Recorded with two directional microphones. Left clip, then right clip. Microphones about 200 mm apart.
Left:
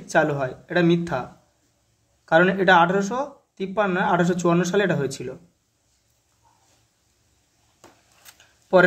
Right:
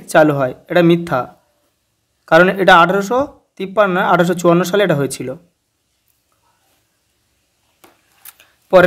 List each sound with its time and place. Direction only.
0.0 s speech: 40° right (ahead or behind)
2.2 s speech: 40° right (ahead or behind)
8.3 s a sound: 40° right (ahead or behind)